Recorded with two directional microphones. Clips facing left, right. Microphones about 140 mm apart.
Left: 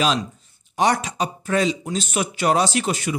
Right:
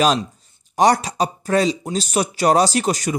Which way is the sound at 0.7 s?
35° right (ahead or behind).